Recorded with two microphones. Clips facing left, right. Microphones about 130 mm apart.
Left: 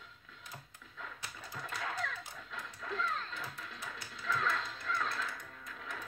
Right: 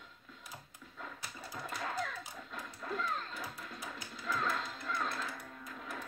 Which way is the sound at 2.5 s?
10° right (ahead or behind).